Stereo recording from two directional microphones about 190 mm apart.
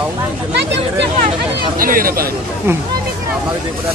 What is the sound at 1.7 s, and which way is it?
Speech, 50° right (ahead or behind).